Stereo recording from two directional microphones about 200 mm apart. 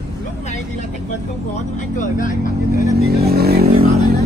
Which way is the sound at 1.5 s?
40° left (ahead or behind).